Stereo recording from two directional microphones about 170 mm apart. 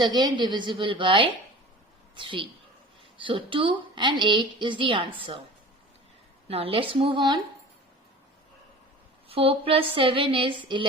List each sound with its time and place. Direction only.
0.0 s a woman's voice: 25° right (ahead or behind)
6.5 s speech: 35° right (ahead or behind)
9.3 s speech: 35° right (ahead or behind)